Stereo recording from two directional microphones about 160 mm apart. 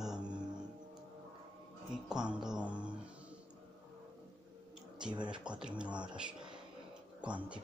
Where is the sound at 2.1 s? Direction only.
5° right (ahead or behind).